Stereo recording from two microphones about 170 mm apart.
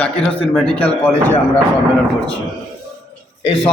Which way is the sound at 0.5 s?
5° left (ahead or behind).